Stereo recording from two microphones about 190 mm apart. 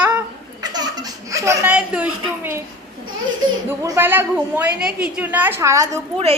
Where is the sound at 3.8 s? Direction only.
15° right (ahead or behind).